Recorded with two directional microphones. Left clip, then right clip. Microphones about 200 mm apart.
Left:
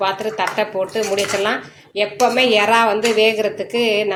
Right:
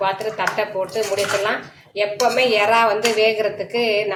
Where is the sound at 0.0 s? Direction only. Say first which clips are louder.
Left 1 dB; 25° left (ahead or behind).